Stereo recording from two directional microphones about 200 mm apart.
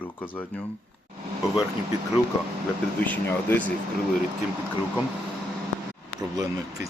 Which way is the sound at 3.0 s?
10° left (ahead or behind).